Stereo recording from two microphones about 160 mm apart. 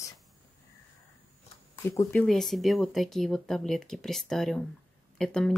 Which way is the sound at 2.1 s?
Centre (ahead or behind).